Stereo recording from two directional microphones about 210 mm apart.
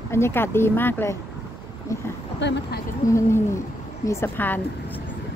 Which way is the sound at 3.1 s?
15° left (ahead or behind).